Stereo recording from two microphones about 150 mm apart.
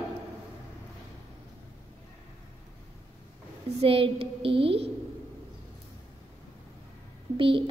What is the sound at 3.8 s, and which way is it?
A woman's voice, 40° right (ahead or behind).